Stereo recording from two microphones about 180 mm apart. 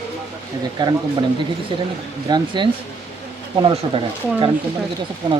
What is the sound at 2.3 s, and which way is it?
Speech, 25° right (ahead or behind).